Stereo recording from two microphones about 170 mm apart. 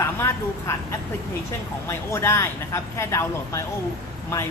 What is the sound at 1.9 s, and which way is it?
A woman's voice, 15° left (ahead or behind).